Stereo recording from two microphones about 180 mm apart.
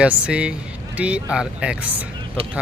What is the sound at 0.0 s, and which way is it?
Speech, 5° right (ahead or behind).